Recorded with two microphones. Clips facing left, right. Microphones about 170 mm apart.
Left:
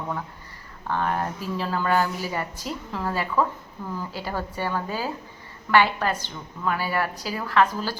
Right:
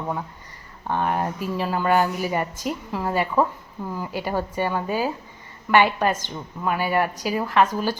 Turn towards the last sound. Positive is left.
turn(degrees=-20)  # may be behind; listen again after turning